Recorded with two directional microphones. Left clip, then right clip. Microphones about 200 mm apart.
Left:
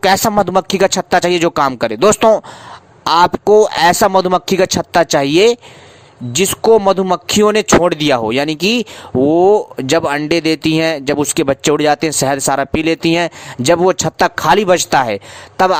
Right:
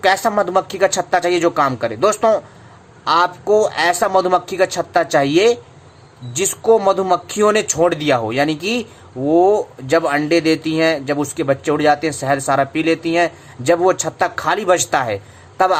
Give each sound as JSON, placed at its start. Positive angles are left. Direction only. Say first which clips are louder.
{"t": 0.0, "sound": "speech", "louder": "left 3 dB", "side_deg": 50}